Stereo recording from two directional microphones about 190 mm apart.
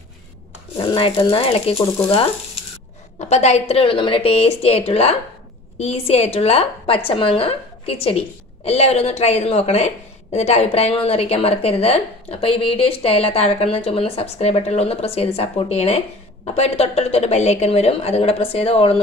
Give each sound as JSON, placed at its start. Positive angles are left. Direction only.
{"t": 0.7, "sound": "speech", "side_deg": 30}
{"t": 3.2, "sound": "a woman's voice", "side_deg": 35}